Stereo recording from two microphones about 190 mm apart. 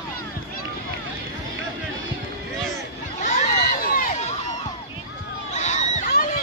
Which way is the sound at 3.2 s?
40° left (ahead or behind).